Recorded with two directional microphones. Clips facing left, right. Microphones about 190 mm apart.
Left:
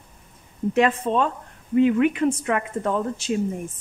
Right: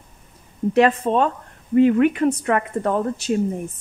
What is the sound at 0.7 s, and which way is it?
Speech, 45° right (ahead or behind).